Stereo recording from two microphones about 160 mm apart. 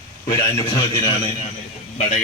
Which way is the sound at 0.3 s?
20° left (ahead or behind).